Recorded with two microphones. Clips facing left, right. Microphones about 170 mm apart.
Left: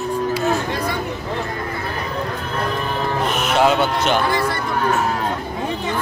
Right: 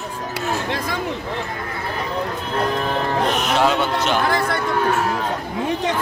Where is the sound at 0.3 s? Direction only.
90° right.